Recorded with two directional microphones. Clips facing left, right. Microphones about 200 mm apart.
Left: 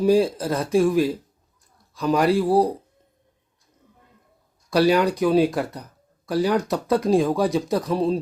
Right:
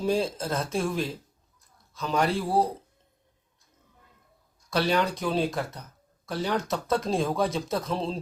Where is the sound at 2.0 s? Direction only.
10° left (ahead or behind).